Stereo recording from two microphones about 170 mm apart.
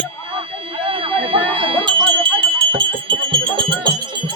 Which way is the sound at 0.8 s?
30° right (ahead or behind).